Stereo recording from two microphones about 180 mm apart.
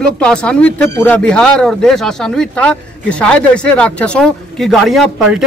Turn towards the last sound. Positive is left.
turn(degrees=0)  # may be behind; listen again after turning